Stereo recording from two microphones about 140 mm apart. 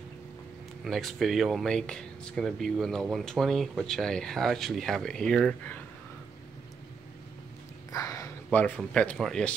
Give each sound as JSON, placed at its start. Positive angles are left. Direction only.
{"t": 0.8, "sound": "speech", "side_deg": 0}
{"t": 7.9, "sound": "a sound", "side_deg": 25}
{"t": 8.5, "sound": "speech", "side_deg": 10}